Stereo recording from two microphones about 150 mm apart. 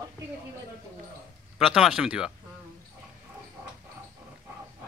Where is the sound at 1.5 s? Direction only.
Centre (ahead or behind).